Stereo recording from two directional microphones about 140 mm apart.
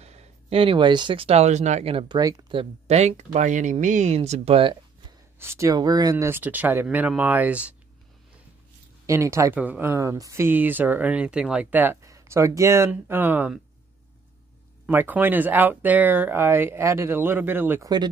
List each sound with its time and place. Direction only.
0.0 s speech: 50° right (ahead or behind)
2.1 s speech: 30° right (ahead or behind)
2.6 s speech: 50° right (ahead or behind)
5.4 s speech: 20° right (ahead or behind)
9.0 s speech: 20° right (ahead or behind)
14.9 s speech: 15° right (ahead or behind)